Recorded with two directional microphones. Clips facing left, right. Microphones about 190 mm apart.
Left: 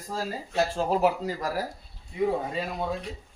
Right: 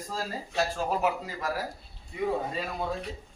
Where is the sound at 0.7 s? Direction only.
35° left (ahead or behind).